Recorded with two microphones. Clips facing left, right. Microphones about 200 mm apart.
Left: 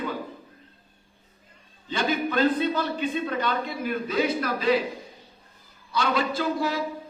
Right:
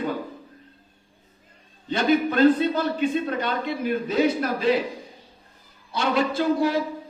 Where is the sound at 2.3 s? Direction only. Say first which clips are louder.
Right 3 dB; 40° right (ahead or behind).